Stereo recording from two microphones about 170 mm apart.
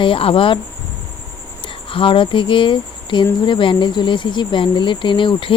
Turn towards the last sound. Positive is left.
turn(degrees=30)  # may be behind; listen again after turning